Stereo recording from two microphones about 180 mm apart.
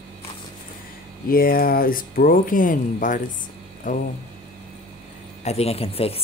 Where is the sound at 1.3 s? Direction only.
55° left (ahead or behind).